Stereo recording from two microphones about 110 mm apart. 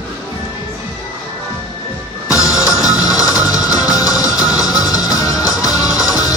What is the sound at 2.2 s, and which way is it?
Music, 30° left (ahead or behind).